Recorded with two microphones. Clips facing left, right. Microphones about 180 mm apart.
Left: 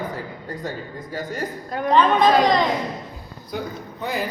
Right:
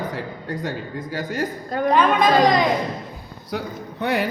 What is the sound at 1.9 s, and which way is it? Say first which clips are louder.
Speech: left 1 dB; 10° right (ahead or behind).